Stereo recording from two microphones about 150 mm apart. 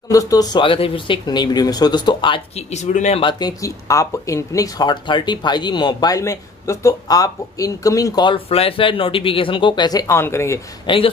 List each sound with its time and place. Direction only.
0.1 s speech: 25° left (ahead or behind); by 3.2 s 50° left (ahead or behind)
3.2 s speech: 30° left (ahead or behind)
8.5 s speech: 40° left (ahead or behind); by 10.6 s 15° left (ahead or behind)
10.9 s speech: 30° left (ahead or behind)